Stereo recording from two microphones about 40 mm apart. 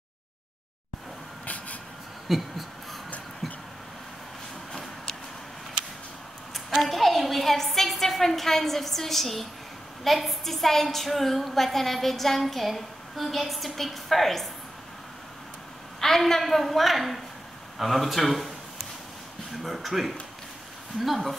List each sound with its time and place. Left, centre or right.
1.4 s vehicle: left
2.2 s a sound: centre
6.5 s a sound: centre
10.0 s a woman's voice: centre
16.0 s a woman's voice: centre
19.6 s a woman's voice: centre